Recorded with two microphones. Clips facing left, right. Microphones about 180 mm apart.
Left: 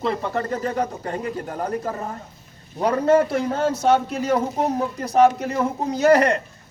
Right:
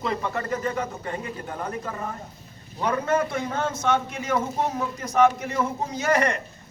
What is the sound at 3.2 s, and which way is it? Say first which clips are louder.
Speech: left 6 dB; 35° left (ahead or behind).